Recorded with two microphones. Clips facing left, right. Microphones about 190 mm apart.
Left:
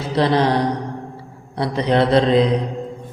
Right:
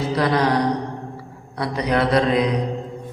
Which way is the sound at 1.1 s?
30° left (ahead or behind).